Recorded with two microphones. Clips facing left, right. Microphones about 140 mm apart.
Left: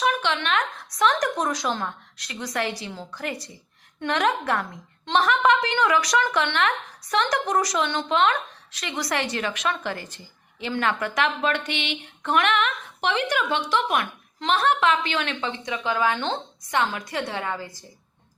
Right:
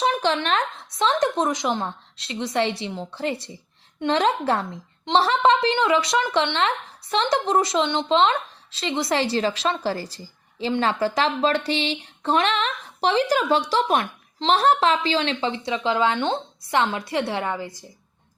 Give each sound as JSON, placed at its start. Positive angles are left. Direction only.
{"t": 0.0, "sound": "a woman's voice", "side_deg": -35}